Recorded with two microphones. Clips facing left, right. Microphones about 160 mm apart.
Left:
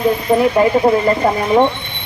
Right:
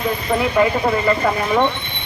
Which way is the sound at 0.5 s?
30° left (ahead or behind).